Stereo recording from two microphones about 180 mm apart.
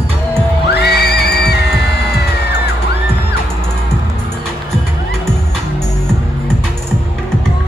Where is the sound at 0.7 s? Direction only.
65° left (ahead or behind).